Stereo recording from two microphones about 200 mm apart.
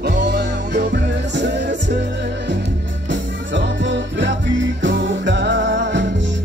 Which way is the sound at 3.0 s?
65° right (ahead or behind).